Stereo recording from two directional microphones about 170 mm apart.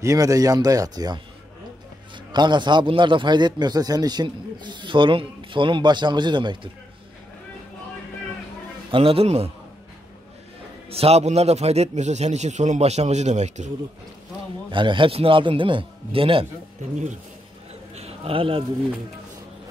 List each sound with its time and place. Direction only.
0.0 s a man's voice: 20° right (ahead or behind)
2.3 s a man's voice: 25° right (ahead or behind)
8.9 s a man's voice: 35° right (ahead or behind)
10.9 s a man's voice: 35° right (ahead or behind)
14.7 s a man's voice: 30° right (ahead or behind)
17.9 s a sound: 35° right (ahead or behind)